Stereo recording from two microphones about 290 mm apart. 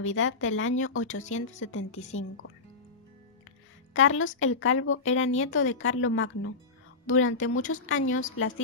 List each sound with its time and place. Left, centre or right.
0.0 s speech: left
3.9 s a woman's voice: left